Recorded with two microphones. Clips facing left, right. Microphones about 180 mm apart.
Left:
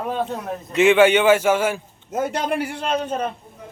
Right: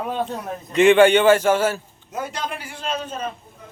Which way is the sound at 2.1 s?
50° left (ahead or behind).